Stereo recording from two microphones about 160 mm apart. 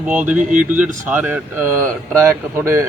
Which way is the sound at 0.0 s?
10° right (ahead or behind).